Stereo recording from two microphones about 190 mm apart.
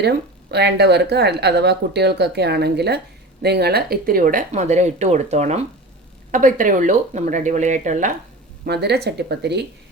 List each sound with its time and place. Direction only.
0.5 s speech: 60° right (ahead or behind); by 8.1 s 40° right (ahead or behind)
8.6 s speech: 60° right (ahead or behind)